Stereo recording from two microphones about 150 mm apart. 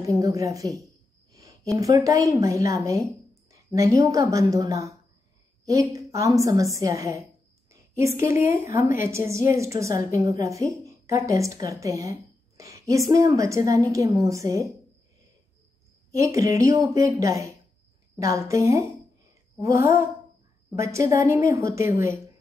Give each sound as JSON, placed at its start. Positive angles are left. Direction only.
{"t": 0.0, "sound": "a sound", "side_deg": -20}
{"t": 1.8, "sound": "a woman's voice", "side_deg": -20}
{"t": 16.2, "sound": "a woman's voice", "side_deg": -20}